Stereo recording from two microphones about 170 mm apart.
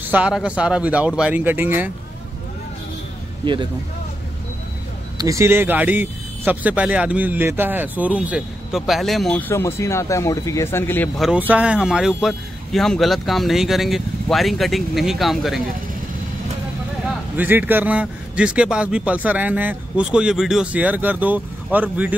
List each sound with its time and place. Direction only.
0.0 s speech: 10° right (ahead or behind)
3.4 s speech: 30° right (ahead or behind)
5.1 s speech: 20° right (ahead or behind); by 11.1 s 15° left (ahead or behind)
11.1 s speech: 5° right (ahead or behind)
17.4 s speech: 10° right (ahead or behind)